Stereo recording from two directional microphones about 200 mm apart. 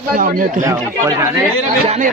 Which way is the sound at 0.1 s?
45° right (ahead or behind).